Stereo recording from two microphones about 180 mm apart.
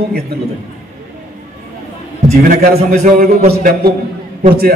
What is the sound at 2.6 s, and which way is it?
Speech, 55° right (ahead or behind).